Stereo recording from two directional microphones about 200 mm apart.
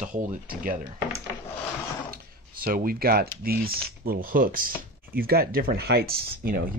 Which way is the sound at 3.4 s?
50° right (ahead or behind).